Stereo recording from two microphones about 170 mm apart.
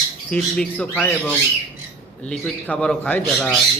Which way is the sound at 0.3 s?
5° left (ahead or behind).